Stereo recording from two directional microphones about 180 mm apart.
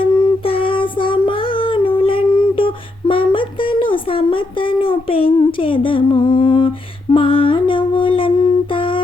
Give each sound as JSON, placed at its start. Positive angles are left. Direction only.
{"t": 0.0, "sound": "child singing", "side_deg": 30}
{"t": 7.1, "sound": "humming", "side_deg": 30}